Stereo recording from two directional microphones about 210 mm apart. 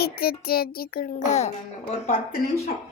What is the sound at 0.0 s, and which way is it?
Music, 45° left (ahead or behind).